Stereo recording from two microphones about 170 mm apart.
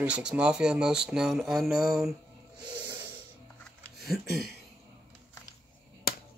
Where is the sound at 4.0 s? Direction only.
Centre (ahead or behind).